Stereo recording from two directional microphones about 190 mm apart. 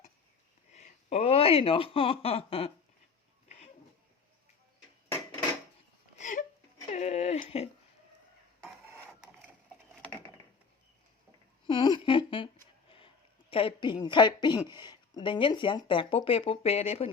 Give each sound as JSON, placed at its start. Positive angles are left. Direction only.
{"t": 0.7, "sound": "speech", "side_deg": 35}
{"t": 6.1, "sound": "whimper", "side_deg": 40}
{"t": 6.8, "sound": "a sound", "side_deg": 35}
{"t": 8.6, "sound": "printer", "side_deg": -10}
{"t": 11.6, "sound": "a sound", "side_deg": 25}
{"t": 13.5, "sound": "a woman's voice", "side_deg": 30}